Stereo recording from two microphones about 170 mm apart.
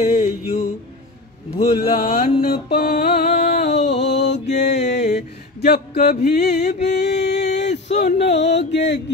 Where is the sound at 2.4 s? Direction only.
65° left (ahead or behind).